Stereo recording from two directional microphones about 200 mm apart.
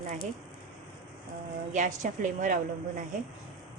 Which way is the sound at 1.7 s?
40° right (ahead or behind).